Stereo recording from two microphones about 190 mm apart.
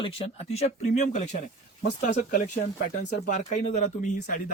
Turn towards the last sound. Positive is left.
turn(degrees=40)  # may be behind; listen again after turning